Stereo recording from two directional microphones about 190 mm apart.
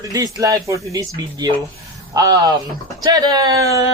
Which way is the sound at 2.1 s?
20° right (ahead or behind).